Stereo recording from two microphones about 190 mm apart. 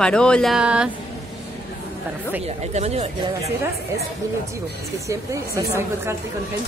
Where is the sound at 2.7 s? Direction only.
35° right (ahead or behind).